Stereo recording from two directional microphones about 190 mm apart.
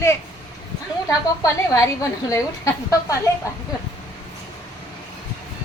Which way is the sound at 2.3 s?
15° left (ahead or behind).